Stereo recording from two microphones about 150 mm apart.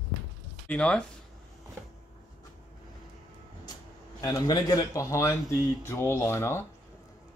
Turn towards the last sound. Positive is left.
turn(degrees=15)  # may be behind; listen again after turning